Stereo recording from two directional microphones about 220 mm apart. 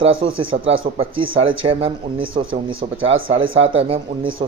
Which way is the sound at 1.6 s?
25° right (ahead or behind).